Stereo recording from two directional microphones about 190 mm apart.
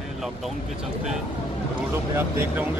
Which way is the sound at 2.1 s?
10° right (ahead or behind).